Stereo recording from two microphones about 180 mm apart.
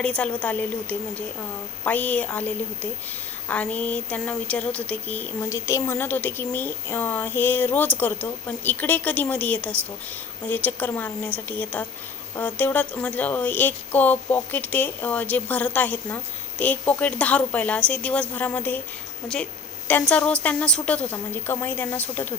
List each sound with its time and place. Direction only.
0.0 s a woman's voice: 5° left (ahead or behind)